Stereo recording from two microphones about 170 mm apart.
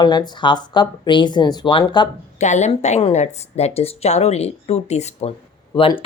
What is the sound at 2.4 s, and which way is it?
Speech, 45° left (ahead or behind).